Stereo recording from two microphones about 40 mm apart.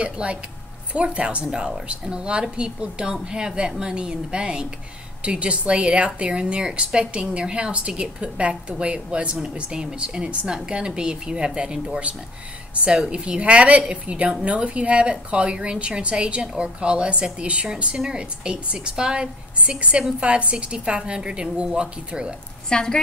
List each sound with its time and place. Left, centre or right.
0.0 s a woman's voice: right
12.8 s a woman's voice: right
22.7 s a woman's voice: centre